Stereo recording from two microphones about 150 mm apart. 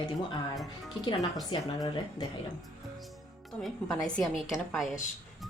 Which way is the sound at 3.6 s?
Centre (ahead or behind).